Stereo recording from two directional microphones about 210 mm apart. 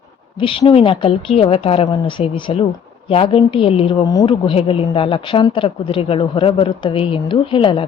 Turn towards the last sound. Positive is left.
turn(degrees=25)  # may be behind; listen again after turning